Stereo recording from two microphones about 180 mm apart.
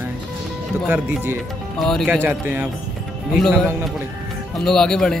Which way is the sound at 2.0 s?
10° right (ahead or behind).